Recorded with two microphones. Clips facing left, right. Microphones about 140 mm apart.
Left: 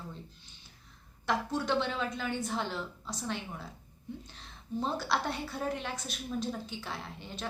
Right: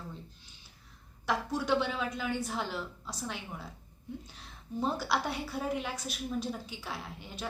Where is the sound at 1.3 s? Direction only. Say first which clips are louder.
Right 1 dB; 10° right (ahead or behind).